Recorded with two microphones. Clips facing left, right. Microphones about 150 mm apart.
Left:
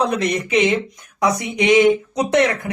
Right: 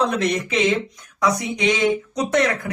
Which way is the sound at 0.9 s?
20° left (ahead or behind).